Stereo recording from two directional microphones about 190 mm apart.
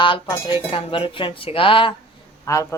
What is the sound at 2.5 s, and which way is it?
Speech, 15° left (ahead or behind).